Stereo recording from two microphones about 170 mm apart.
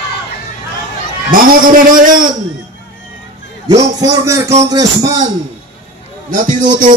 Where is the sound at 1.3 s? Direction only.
55° right (ahead or behind).